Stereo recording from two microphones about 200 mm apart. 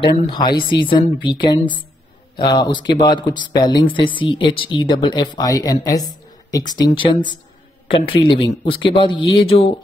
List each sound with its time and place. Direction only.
0.0 s speech: 20° left (ahead or behind)